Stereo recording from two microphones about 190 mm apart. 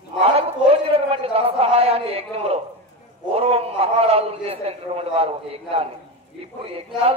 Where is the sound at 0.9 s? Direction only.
30° right (ahead or behind).